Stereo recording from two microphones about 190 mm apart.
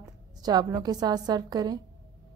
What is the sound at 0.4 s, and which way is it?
A woman's voice, 20° right (ahead or behind).